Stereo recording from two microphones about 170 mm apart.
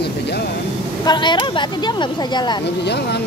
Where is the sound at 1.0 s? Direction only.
25° left (ahead or behind).